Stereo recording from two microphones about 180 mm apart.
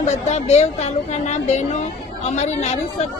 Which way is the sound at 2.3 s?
40° left (ahead or behind).